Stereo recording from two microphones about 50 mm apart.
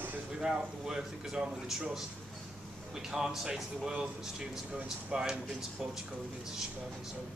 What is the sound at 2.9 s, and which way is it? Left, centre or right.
A man's voice, centre.